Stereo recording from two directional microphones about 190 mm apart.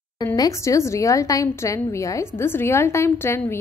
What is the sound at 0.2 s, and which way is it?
Speech, 15° left (ahead or behind).